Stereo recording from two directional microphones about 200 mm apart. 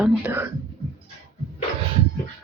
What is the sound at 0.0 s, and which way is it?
Speech, 10° right (ahead or behind).